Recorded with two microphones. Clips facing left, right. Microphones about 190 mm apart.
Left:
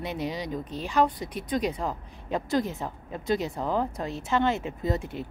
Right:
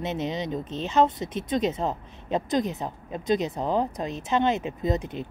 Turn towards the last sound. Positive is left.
turn(degrees=-20)  # may be behind; listen again after turning